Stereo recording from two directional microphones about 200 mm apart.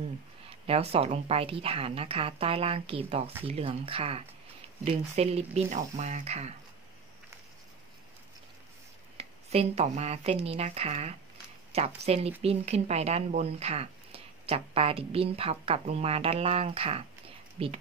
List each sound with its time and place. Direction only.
0.5 s speech: 30° right (ahead or behind)
9.1 s speech: 30° right (ahead or behind)